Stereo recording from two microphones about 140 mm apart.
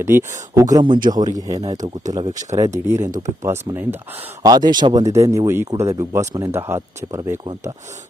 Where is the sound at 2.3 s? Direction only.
60° right (ahead or behind).